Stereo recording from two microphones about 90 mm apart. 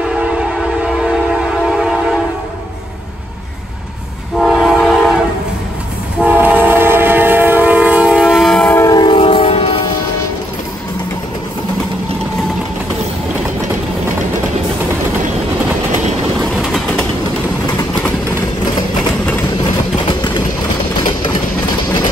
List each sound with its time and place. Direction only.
0.0 s train: 10° right (ahead or behind)
4.4 s train: 5° right (ahead or behind)
6.2 s train: 20° right (ahead or behind)
8.5 s train: 5° left (ahead or behind)
8.9 s train: 65° left (ahead or behind); by 9.8 s 90° left